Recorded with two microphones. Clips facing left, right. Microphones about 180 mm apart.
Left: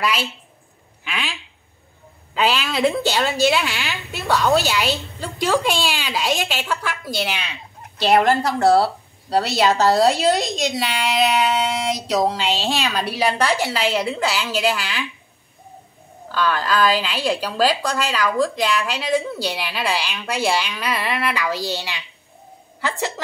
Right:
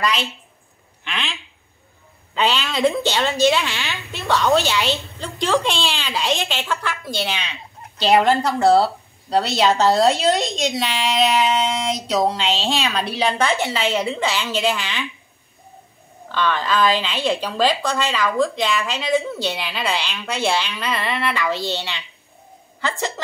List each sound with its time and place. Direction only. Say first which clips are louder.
0.0 s a woman's voice: even; 5° left (ahead or behind)
2.3 s a woman's voice: left 1 dB; 5° left (ahead or behind)
16.3 s a woman's voice: even; 5° left (ahead or behind)